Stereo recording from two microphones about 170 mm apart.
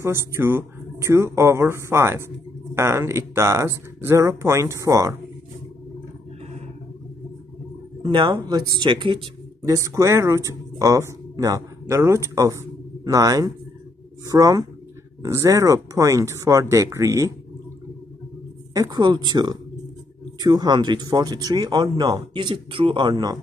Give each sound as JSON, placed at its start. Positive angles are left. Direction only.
{"t": 0.0, "sound": "speech", "side_deg": -15}
{"t": 8.0, "sound": "speech", "side_deg": -25}
{"t": 18.7, "sound": "speech", "side_deg": -20}